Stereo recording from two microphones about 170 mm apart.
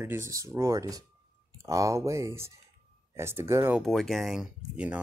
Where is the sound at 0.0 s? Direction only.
15° right (ahead or behind).